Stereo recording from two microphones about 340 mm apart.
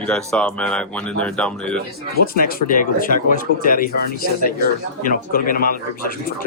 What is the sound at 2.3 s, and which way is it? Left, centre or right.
Speech, left.